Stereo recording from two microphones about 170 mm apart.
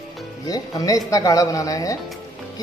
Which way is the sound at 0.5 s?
20° left (ahead or behind).